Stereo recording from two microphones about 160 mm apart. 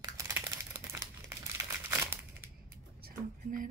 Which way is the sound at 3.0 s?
55° right (ahead or behind).